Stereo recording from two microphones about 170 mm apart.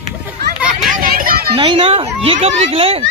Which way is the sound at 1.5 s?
30° right (ahead or behind).